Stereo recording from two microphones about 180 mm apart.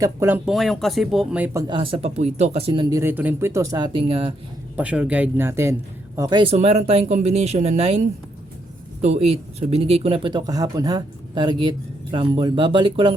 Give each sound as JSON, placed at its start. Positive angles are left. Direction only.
{"t": 0.0, "sound": "speech", "side_deg": -15}
{"t": 0.5, "sound": "speech", "side_deg": 0}
{"t": 1.5, "sound": "speech", "side_deg": -25}
{"t": 2.9, "sound": "speech", "side_deg": -15}
{"t": 4.8, "sound": "speech", "side_deg": -5}
{"t": 6.1, "sound": "speech", "side_deg": -25}